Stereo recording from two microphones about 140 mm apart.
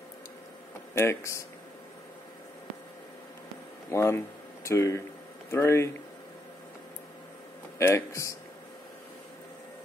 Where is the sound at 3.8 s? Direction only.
20° left (ahead or behind).